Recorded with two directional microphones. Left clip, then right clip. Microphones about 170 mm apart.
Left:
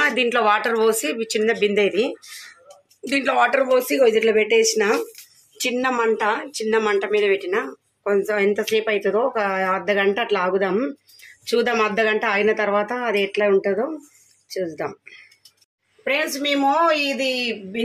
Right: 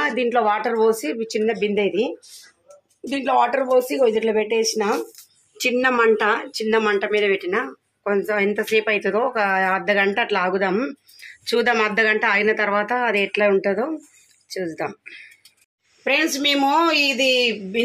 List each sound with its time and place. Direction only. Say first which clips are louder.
0.0 s speech: left 1 dB; 10° right (ahead or behind); by 15.2 s 5° left (ahead or behind)
16.0 s a woman's voice: right 2 dB; 55° right (ahead or behind)